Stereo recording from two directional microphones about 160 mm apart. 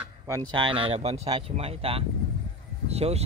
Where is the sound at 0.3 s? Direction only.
25° right (ahead or behind).